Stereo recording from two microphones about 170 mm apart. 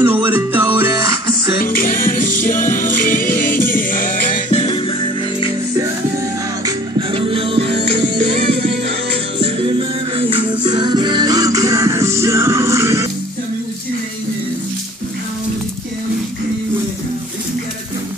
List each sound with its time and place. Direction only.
0.0 s music: 10° right (ahead or behind)
1.6 s music: 55° left (ahead or behind); by 5.5 s 30° left (ahead or behind)
6.6 s music: 30° right (ahead or behind)